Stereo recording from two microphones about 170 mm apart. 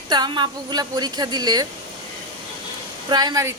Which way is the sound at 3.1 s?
25° right (ahead or behind).